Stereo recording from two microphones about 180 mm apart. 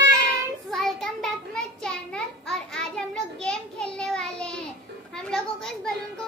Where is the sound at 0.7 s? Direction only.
Centre (ahead or behind).